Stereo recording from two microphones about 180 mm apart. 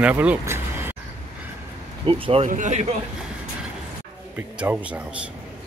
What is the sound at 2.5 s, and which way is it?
Speech, 45° right (ahead or behind).